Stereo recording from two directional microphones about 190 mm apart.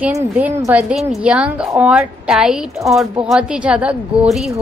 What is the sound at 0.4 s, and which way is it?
A woman's voice, 10° right (ahead or behind).